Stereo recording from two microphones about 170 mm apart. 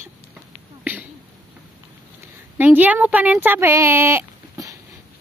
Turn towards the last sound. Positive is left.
turn(degrees=-15)  # may be behind; listen again after turning